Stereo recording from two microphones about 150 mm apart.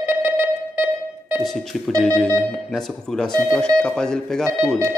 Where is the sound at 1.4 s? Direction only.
Centre (ahead or behind).